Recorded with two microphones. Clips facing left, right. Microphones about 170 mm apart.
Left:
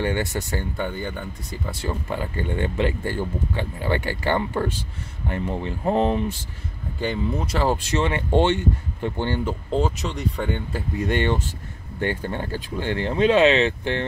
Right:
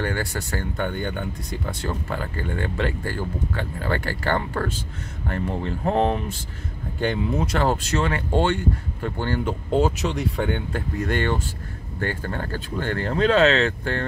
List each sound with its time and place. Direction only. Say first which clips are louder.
0.0 s speech: left 2 dB; 20° left (ahead or behind)
2.0 s speech: left 2 dB; 20° left (ahead or behind)
8.0 s speech: left 3 dB; 20° left (ahead or behind)
9.4 s speech: right 5 dB; centre (ahead or behind)
11.0 s speech: left 2 dB; 15° left (ahead or behind)